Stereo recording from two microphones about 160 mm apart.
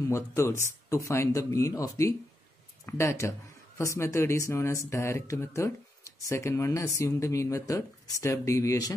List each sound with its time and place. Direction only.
0.0 s speech: 20° left (ahead or behind)